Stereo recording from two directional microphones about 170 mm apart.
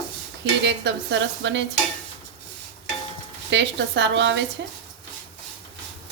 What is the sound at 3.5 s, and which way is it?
Speech, 90° right.